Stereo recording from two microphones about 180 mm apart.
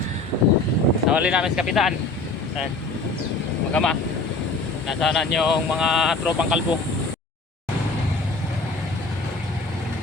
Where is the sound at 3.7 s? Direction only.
5° left (ahead or behind).